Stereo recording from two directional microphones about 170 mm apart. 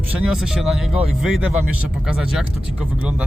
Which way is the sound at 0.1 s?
5° right (ahead or behind).